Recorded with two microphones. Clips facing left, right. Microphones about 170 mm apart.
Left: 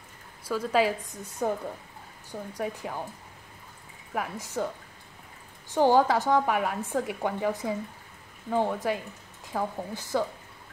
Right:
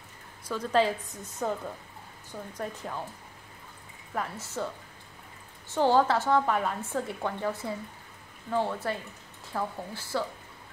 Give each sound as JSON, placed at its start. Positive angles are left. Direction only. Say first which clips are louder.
{"t": 0.5, "sound": "a woman's voice", "louder": "left 1 dB", "side_deg": 5}
{"t": 2.5, "sound": "a woman's voice", "louder": "left 3 dB", "side_deg": 10}
{"t": 4.1, "sound": "a woman's voice", "louder": "left 2 dB", "side_deg": 10}
{"t": 5.7, "sound": "a woman's voice", "louder": "left 2 dB", "side_deg": 15}